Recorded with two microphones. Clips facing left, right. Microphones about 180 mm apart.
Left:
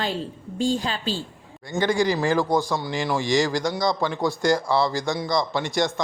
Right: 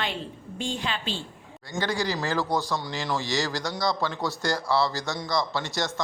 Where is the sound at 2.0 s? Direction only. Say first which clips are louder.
Left 6 dB; 15° left (ahead or behind).